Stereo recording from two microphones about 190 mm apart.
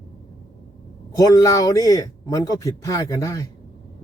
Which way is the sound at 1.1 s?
20° left (ahead or behind).